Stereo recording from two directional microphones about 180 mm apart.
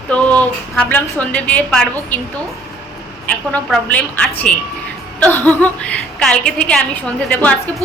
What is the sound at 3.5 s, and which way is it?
A woman's voice, 5° left (ahead or behind).